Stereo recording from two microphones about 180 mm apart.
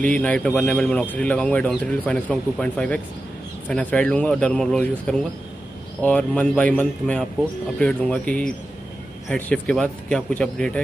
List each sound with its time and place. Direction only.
0.0 s speech: 5° left (ahead or behind)